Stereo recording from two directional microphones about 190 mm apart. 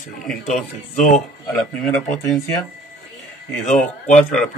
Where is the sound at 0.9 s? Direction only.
40° left (ahead or behind).